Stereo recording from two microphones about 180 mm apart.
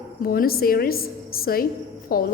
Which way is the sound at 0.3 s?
55° left (ahead or behind).